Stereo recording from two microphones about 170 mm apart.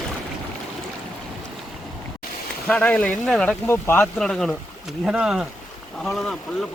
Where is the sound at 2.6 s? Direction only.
10° left (ahead or behind).